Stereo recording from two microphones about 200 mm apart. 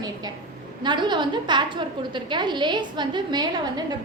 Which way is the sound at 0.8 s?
20° right (ahead or behind).